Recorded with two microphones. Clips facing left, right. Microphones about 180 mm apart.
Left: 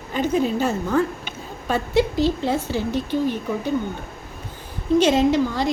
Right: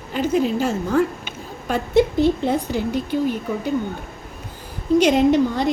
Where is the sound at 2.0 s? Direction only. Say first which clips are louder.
Right 4 dB; 20° right (ahead or behind).